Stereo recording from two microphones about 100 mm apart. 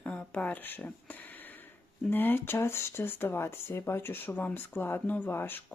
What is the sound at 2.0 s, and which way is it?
Speech, 20° left (ahead or behind).